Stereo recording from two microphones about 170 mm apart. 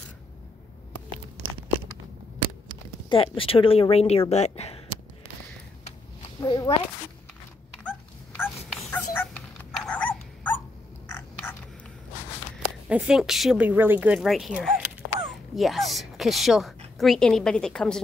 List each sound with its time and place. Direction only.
3.1 s speech: 30° left (ahead or behind)
6.4 s speech: 25° left (ahead or behind)
7.7 s dog: 10° left (ahead or behind)
8.9 s music: 10° left (ahead or behind)
9.8 s cat: 10° left (ahead or behind)
11.1 s a sound: 15° left (ahead or behind)
12.8 s a woman's voice: 5° right (ahead or behind)